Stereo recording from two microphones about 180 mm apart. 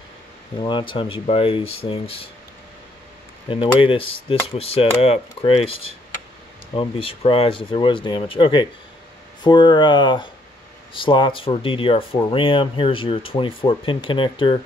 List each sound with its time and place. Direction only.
0.6 s speech: 25° left (ahead or behind)
3.4 s speech: 30° left (ahead or behind)